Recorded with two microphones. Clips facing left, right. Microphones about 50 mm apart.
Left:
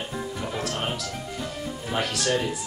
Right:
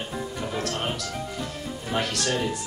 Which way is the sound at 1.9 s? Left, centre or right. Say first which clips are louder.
Even; centre.